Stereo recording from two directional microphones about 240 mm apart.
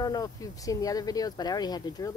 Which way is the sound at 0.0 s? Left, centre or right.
Centre.